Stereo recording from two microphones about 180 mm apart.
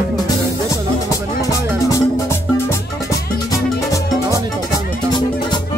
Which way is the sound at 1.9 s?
15° left (ahead or behind).